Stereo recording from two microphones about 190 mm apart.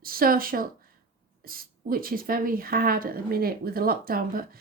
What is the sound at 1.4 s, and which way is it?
Speech, 50° right (ahead or behind).